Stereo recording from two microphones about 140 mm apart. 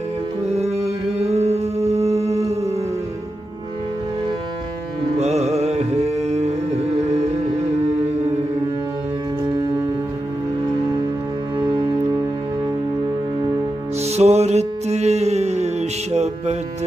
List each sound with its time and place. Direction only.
0.5 s a sound: 50° right (ahead or behind)
5.1 s music: 50° right (ahead or behind)
14.0 s music: 50° right (ahead or behind)